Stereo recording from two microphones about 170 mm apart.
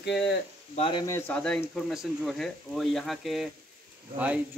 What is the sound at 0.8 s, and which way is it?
Speech, 30° left (ahead or behind).